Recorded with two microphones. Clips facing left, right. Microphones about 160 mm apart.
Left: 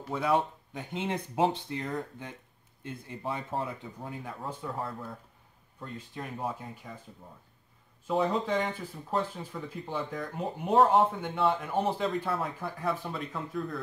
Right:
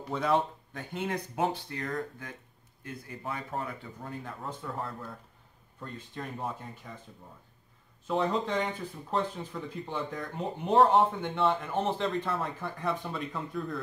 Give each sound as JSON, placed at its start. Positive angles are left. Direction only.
{"t": 0.0, "sound": "speech", "side_deg": 5}
{"t": 0.7, "sound": "speech", "side_deg": 20}
{"t": 4.0, "sound": "speech", "side_deg": 10}
{"t": 8.1, "sound": "speech", "side_deg": 5}